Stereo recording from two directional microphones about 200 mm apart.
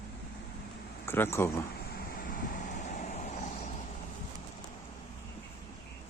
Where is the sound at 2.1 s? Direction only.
45° left (ahead or behind).